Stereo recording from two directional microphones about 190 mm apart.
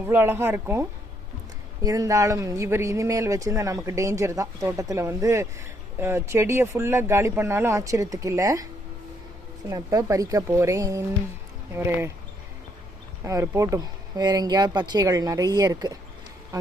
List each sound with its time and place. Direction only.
0.0 s speech: 10° right (ahead or behind)
9.6 s speech: 20° right (ahead or behind)
13.2 s speech: 15° right (ahead or behind)